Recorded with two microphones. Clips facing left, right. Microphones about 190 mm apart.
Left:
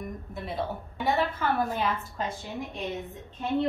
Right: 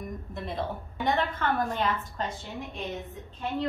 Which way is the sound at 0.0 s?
5° left (ahead or behind).